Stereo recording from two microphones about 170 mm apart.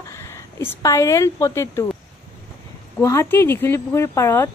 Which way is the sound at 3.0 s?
15° left (ahead or behind).